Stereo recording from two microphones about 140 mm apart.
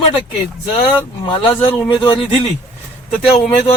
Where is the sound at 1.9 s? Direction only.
35° left (ahead or behind).